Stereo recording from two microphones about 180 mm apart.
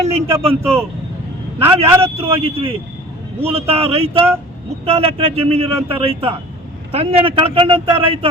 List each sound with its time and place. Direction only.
0.4 s a man's voice: 35° right (ahead or behind)